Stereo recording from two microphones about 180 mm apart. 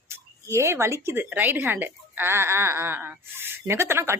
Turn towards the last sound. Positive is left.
turn(degrees=-15)  # may be behind; listen again after turning